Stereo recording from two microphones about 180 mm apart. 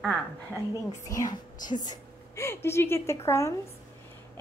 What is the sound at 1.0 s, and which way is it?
A woman's voice, 20° left (ahead or behind).